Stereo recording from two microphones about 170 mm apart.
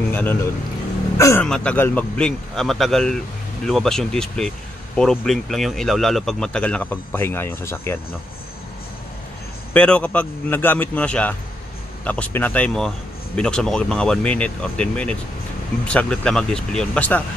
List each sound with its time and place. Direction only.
0.1 s a man's voice: 10° left (ahead or behind)
1.4 s speech: 5° left (ahead or behind)
9.8 s a man's voice: 10° left (ahead or behind)